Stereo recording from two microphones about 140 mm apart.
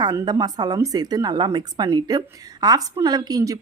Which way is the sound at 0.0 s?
30° right (ahead or behind).